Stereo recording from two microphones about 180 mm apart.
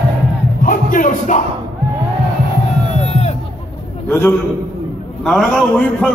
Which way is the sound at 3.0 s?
35° left (ahead or behind).